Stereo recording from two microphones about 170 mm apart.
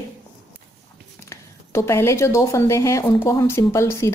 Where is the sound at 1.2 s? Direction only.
15° left (ahead or behind).